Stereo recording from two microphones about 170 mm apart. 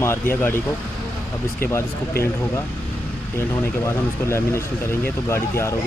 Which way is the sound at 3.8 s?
15° left (ahead or behind).